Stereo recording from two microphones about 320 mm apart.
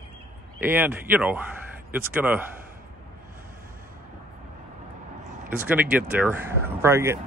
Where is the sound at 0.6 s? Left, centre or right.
Centre.